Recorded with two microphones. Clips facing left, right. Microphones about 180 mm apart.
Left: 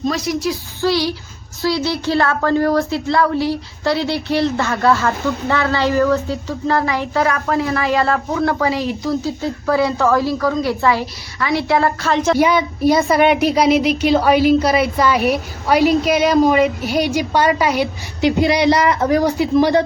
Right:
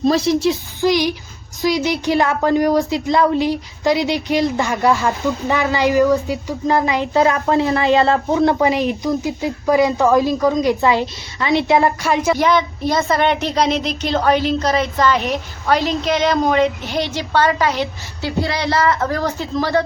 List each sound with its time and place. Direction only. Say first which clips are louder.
0.0 s a child's voice: right 4 dB; 30° right (ahead or behind)
0.8 s speech: even; 15° right (ahead or behind)
12.4 s speech: left 2 dB; 10° left (ahead or behind)